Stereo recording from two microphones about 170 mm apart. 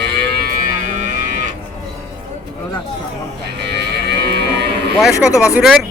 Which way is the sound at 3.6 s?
75° right (ahead or behind).